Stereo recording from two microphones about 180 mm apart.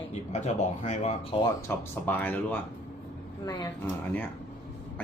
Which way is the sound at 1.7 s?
10° left (ahead or behind).